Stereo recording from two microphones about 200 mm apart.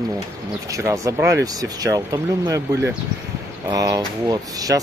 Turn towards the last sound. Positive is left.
turn(degrees=-20)  # may be behind; listen again after turning